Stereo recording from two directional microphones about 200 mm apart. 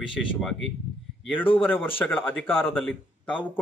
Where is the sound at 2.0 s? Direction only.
10° left (ahead or behind).